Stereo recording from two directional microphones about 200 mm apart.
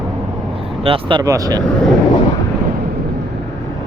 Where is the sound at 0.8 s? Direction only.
25° right (ahead or behind).